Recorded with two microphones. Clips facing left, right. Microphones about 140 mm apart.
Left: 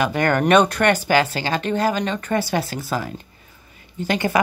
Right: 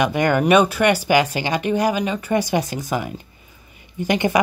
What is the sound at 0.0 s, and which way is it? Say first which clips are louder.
Speech: right 1 dB; 15° right (ahead or behind).